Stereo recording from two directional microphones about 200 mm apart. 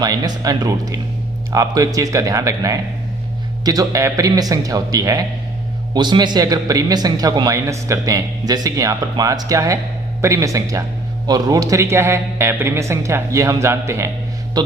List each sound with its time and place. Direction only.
0.0 s speech: 20° right (ahead or behind)